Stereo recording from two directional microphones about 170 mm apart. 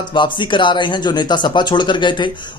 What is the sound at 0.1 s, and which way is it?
Speech, 30° left (ahead or behind).